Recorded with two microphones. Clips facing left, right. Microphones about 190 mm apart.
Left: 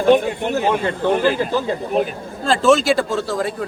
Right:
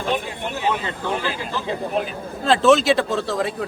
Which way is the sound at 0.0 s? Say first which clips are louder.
Left 10 dB; 45° left (ahead or behind).